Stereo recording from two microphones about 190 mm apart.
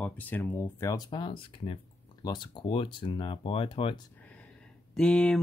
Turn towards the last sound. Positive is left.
turn(degrees=5)  # may be behind; listen again after turning